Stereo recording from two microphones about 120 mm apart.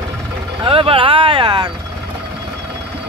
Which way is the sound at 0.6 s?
50° right (ahead or behind).